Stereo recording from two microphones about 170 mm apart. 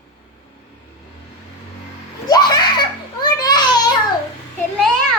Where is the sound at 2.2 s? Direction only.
25° left (ahead or behind).